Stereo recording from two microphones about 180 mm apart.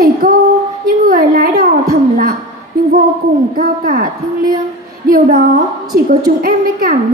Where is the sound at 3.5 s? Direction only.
50° right (ahead or behind).